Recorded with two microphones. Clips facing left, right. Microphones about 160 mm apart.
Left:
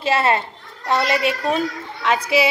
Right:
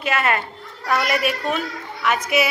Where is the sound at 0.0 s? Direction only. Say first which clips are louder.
Left 3 dB; 30° left (ahead or behind).